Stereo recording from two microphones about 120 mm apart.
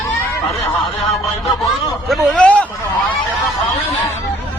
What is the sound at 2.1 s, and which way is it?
Speech, 10° left (ahead or behind).